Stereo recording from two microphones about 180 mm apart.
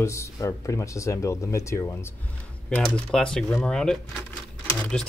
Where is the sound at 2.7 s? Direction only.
5° left (ahead or behind).